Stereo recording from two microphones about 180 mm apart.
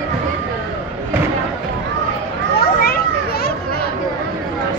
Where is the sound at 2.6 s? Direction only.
60° left (ahead or behind).